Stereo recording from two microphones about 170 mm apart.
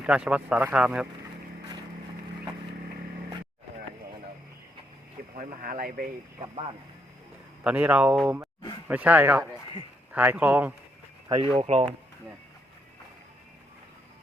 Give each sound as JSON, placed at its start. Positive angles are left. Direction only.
{"t": 0.0, "sound": "speech", "side_deg": -5}
{"t": 5.4, "sound": "speech", "side_deg": -50}
{"t": 6.4, "sound": "speech", "side_deg": -35}
{"t": 7.6, "sound": "speech", "side_deg": -10}
{"t": 11.3, "sound": "speech", "side_deg": -30}